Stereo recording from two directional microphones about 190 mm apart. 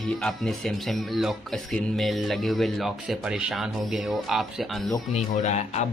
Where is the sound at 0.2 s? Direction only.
Centre (ahead or behind).